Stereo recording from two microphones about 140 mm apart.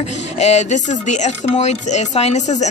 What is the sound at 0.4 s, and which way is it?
Speech, 50° left (ahead or behind).